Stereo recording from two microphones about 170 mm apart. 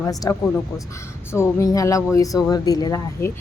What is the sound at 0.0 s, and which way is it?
A woman's voice, 20° left (ahead or behind).